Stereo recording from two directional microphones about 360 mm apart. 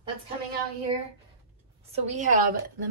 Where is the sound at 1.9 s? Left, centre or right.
Centre.